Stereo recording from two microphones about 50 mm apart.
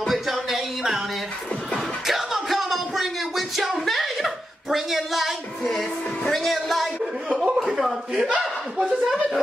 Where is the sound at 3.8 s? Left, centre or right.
Centre.